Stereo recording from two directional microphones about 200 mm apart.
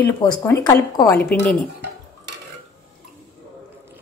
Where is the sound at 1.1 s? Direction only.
5° left (ahead or behind).